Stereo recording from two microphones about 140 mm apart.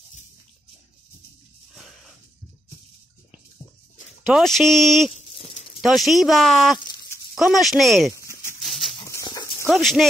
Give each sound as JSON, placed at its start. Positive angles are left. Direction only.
{"t": 4.3, "sound": "speech", "side_deg": 0}
{"t": 8.6, "sound": "dog", "side_deg": 0}
{"t": 9.1, "sound": "dog", "side_deg": 25}
{"t": 9.7, "sound": "speech", "side_deg": 0}